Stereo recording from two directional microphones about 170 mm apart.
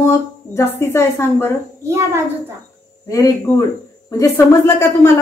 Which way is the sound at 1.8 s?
15° right (ahead or behind).